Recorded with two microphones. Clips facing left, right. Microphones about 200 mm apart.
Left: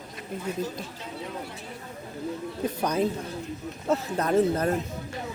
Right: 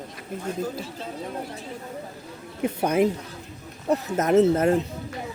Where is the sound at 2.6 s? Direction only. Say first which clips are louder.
Right 5 dB; 25° right (ahead or behind).